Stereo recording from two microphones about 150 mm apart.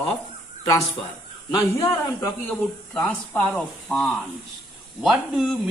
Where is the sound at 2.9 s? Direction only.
5° left (ahead or behind).